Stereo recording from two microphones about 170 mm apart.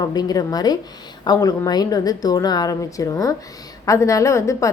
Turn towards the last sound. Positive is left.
turn(degrees=15)  # may be behind; listen again after turning